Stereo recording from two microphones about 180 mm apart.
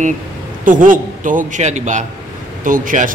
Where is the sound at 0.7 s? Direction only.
45° right (ahead or behind).